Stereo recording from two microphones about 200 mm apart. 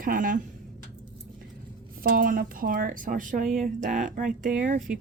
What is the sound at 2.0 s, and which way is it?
A woman's voice, 45° right (ahead or behind).